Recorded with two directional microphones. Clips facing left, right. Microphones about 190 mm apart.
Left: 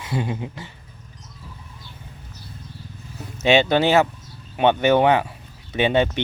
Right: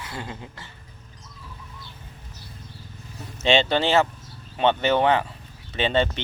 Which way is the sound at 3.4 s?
10° left (ahead or behind).